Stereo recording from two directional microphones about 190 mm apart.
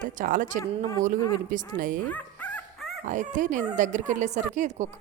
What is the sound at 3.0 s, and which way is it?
Speech, 40° right (ahead or behind).